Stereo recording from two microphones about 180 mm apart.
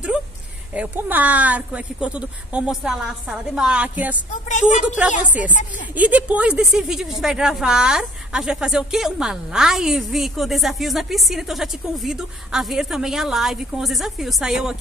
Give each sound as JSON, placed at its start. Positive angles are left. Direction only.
{"t": 0.7, "sound": "a woman's voice", "side_deg": -10}
{"t": 4.5, "sound": "a woman's voice", "side_deg": 45}
{"t": 4.8, "sound": "a woman's voice", "side_deg": -5}